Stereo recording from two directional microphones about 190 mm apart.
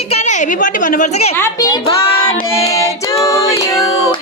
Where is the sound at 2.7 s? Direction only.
15° left (ahead or behind).